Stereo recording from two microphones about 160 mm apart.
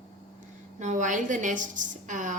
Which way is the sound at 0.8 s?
50° right (ahead or behind).